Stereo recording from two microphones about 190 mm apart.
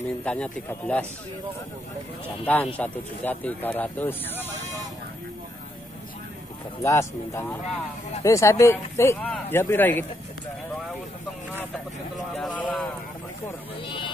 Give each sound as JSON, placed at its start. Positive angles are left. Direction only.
{"t": 0.2, "sound": "speech", "side_deg": 5}
{"t": 2.4, "sound": "speech", "side_deg": 10}
{"t": 6.8, "sound": "speech", "side_deg": 15}
{"t": 12.4, "sound": "speech", "side_deg": 5}
{"t": 13.8, "sound": "speech", "side_deg": 25}